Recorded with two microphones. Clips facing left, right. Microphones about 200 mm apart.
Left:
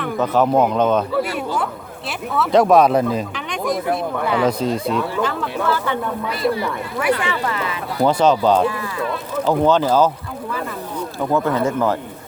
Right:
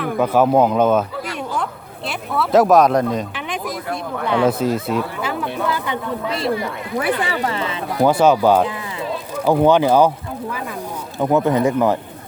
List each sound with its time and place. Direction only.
0.0 s speech: 10° right (ahead or behind)
2.0 s speech: centre (ahead or behind); by 6.5 s 20° right (ahead or behind)
7.0 s speech: 35° right (ahead or behind)
8.0 s speech: 10° right (ahead or behind)
11.2 s speech: 20° right (ahead or behind)